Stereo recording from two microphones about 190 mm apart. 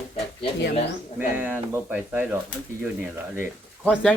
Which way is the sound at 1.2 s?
10° right (ahead or behind).